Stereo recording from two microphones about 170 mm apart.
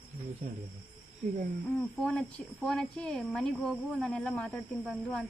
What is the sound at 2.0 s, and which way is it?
Speech, 5° left (ahead or behind).